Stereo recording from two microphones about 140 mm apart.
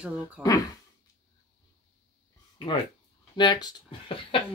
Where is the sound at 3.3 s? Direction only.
30° left (ahead or behind).